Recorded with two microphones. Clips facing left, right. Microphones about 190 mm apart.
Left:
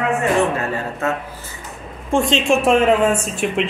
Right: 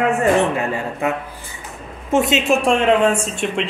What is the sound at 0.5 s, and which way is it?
Speech, 15° right (ahead or behind).